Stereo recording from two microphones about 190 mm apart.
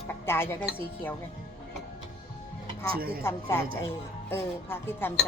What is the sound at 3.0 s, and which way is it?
Speech, 50° right (ahead or behind).